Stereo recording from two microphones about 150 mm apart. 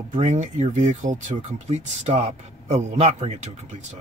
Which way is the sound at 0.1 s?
50° right (ahead or behind).